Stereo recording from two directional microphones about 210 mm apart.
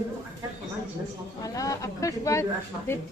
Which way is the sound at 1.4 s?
15° left (ahead or behind).